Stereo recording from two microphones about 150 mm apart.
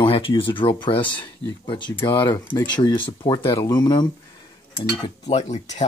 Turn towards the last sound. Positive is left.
turn(degrees=50)  # may be behind; listen again after turning